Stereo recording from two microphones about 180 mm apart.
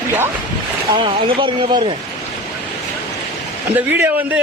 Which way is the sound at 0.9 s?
30° right (ahead or behind).